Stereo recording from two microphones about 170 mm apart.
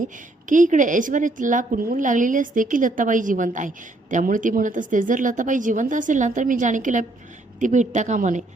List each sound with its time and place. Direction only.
0.0 s a woman's voice: 50° right (ahead or behind)